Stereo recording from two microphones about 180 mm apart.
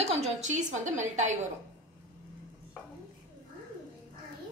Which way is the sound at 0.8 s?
45° right (ahead or behind).